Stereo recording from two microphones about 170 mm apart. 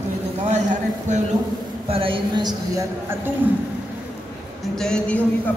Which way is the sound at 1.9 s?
30° right (ahead or behind).